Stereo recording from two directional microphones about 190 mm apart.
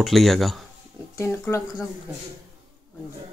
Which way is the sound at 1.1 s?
15° left (ahead or behind).